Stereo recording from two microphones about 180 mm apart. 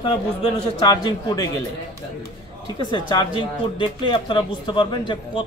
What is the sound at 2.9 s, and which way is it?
Speech, 25° left (ahead or behind).